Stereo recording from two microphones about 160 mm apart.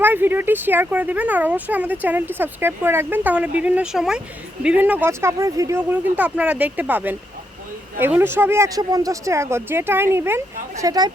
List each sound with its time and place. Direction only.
0.0 s speech: 10° right (ahead or behind)